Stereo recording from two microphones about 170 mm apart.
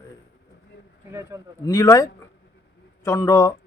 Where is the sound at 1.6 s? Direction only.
20° left (ahead or behind).